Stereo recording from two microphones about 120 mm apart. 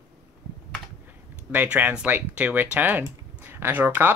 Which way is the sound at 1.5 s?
15° right (ahead or behind).